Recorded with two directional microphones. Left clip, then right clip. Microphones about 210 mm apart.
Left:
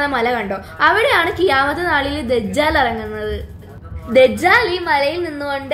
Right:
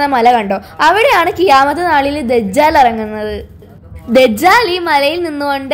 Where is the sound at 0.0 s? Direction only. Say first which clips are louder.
Right 8 dB; 35° right (ahead or behind).